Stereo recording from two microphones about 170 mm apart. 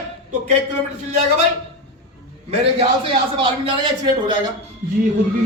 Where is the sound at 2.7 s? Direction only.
30° right (ahead or behind).